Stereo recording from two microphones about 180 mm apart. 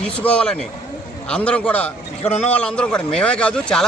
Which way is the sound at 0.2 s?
5° left (ahead or behind).